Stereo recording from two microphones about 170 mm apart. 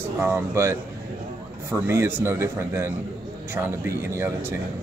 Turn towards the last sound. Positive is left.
turn(degrees=-15)  # may be behind; listen again after turning